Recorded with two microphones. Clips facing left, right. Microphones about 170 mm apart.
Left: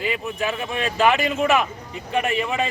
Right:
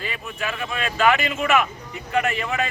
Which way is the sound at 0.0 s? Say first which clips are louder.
Left 5 dB; 15° left (ahead or behind).